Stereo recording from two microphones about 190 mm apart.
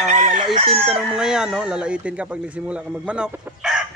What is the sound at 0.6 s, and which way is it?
Speech, 30° right (ahead or behind).